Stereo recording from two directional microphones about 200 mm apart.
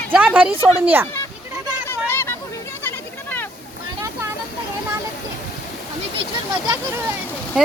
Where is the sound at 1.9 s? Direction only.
10° left (ahead or behind).